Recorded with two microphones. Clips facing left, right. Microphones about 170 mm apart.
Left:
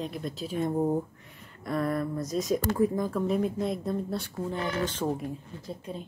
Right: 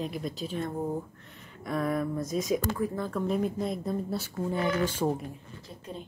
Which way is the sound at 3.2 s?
Centre (ahead or behind).